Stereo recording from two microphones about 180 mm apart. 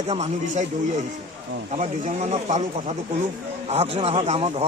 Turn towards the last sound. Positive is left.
turn(degrees=-35)  # may be behind; listen again after turning